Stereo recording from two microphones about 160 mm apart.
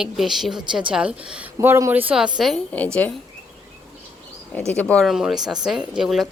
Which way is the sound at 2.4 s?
5° left (ahead or behind).